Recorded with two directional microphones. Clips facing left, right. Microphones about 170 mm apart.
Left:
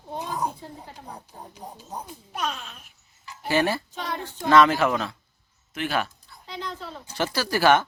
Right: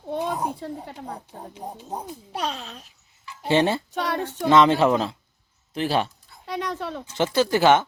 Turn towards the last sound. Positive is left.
turn(degrees=-20)  # may be behind; listen again after turning